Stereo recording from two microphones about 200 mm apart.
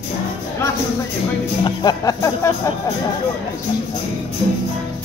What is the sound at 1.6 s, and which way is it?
Speech, 20° left (ahead or behind).